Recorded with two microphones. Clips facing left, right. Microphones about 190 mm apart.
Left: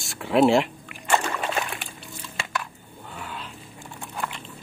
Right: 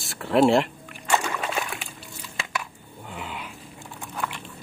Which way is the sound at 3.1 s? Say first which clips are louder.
Right 1 dB; 15° right (ahead or behind).